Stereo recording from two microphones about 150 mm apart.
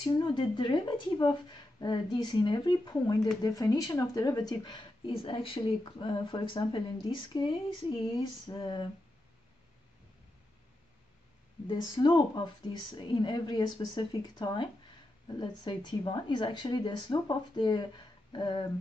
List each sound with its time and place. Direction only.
0.0 s speech: 30° left (ahead or behind)
11.6 s speech: 30° left (ahead or behind)